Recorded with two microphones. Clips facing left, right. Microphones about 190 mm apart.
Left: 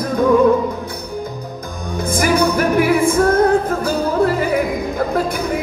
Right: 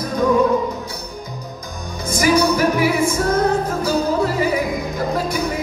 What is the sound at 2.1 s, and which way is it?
Music, 55° left (ahead or behind).